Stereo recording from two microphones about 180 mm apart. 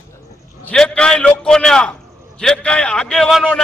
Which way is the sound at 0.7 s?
5° left (ahead or behind).